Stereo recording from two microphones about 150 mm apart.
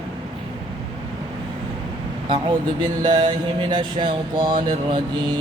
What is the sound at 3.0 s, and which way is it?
Mantra, 30° right (ahead or behind).